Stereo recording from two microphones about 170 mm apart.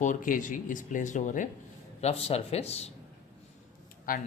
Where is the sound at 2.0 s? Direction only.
35° left (ahead or behind).